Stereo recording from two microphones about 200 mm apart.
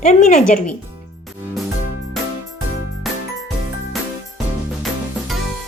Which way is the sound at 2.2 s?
Centre (ahead or behind).